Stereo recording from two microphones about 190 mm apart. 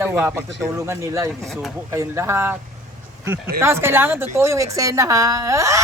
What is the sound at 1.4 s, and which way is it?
Speech, centre (ahead or behind).